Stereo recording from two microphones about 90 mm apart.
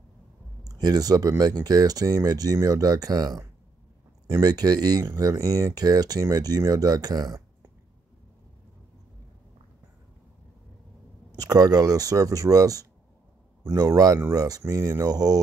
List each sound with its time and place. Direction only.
0.7 s speech: 45° right (ahead or behind)
11.3 s speech: 45° right (ahead or behind)